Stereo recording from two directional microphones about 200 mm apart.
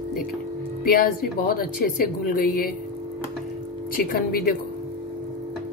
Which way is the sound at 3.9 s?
45° left (ahead or behind).